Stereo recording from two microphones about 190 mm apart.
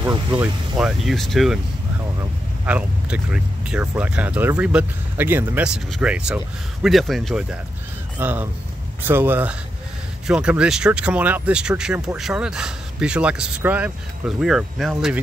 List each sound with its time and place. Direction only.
0.0 s speech: 15° right (ahead or behind)
0.7 s speech: centre (ahead or behind)
2.6 s speech: 5° right (ahead or behind)